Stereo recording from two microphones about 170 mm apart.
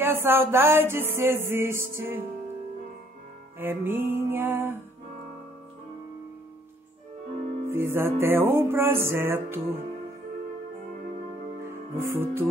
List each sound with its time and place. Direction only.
0.0 s music: 15° right (ahead or behind)
3.5 s music: 10° right (ahead or behind)
7.6 s music: 15° right (ahead or behind)
11.6 s music: 15° right (ahead or behind)